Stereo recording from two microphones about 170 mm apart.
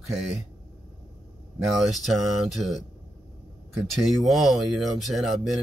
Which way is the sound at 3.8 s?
Centre (ahead or behind).